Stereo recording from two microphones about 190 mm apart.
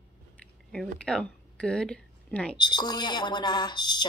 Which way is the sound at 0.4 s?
5° left (ahead or behind).